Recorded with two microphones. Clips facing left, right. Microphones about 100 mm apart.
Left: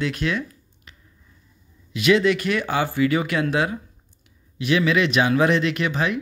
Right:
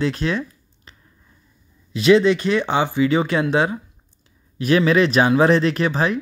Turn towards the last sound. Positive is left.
turn(degrees=-35)  # may be behind; listen again after turning